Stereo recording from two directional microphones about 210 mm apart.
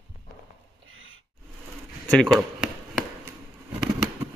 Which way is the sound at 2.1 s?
5° left (ahead or behind).